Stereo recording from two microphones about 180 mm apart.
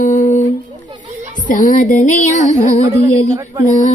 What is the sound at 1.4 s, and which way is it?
Music, 45° left (ahead or behind).